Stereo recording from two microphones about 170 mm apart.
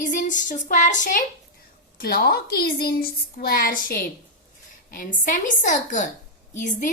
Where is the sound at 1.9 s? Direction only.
60° left (ahead or behind).